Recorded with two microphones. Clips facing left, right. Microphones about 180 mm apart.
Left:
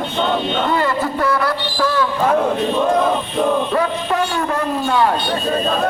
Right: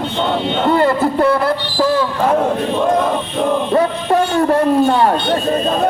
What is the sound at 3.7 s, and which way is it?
A man's voice, 30° right (ahead or behind).